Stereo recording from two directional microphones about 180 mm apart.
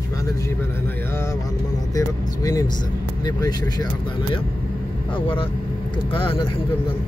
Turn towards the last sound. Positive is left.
turn(degrees=30)  # may be behind; listen again after turning